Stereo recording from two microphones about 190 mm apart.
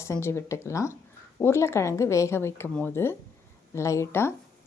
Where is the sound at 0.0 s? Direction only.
15° left (ahead or behind).